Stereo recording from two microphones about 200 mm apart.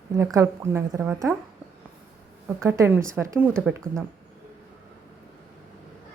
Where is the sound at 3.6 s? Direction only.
5° left (ahead or behind).